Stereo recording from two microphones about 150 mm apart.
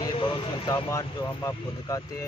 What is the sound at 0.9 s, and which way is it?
Speech, 20° left (ahead or behind).